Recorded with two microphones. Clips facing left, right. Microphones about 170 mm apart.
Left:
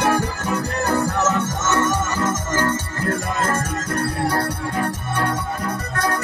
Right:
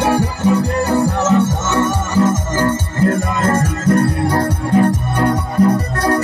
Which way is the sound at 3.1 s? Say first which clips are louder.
Right 5 dB; 30° right (ahead or behind).